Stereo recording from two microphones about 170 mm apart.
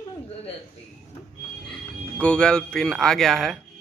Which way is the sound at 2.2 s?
5° left (ahead or behind).